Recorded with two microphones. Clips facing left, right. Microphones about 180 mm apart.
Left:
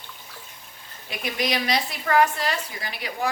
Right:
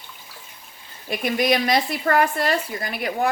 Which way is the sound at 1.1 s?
50° right (ahead or behind).